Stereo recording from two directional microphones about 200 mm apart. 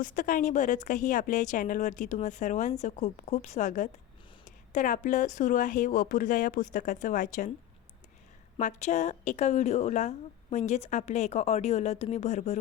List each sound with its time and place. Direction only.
0.0 s speech: 40° left (ahead or behind)
8.5 s speech: 35° left (ahead or behind)